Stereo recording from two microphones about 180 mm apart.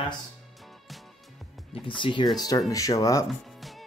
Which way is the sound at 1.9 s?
25° left (ahead or behind).